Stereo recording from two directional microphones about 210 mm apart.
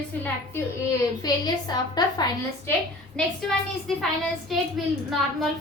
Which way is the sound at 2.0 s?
20° left (ahead or behind).